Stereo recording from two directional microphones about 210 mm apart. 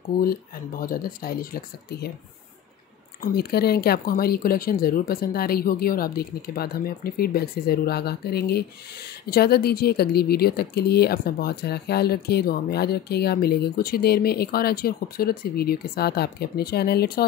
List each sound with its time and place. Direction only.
0.2 s speech: 45° left (ahead or behind)
3.2 s speech: 50° left (ahead or behind)